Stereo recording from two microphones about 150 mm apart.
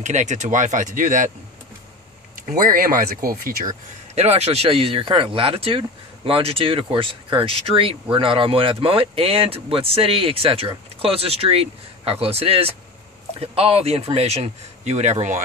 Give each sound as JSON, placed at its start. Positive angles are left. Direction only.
{"t": 0.0, "sound": "speech", "side_deg": -50}
{"t": 2.3, "sound": "speech", "side_deg": -65}
{"t": 4.1, "sound": "speech", "side_deg": -45}